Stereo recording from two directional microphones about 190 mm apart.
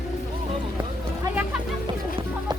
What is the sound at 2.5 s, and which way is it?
Chicken, 20° right (ahead or behind).